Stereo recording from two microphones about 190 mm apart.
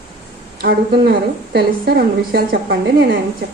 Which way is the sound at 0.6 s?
55° right (ahead or behind).